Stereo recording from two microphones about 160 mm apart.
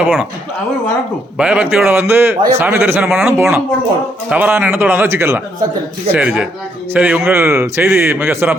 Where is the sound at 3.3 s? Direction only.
15° right (ahead or behind).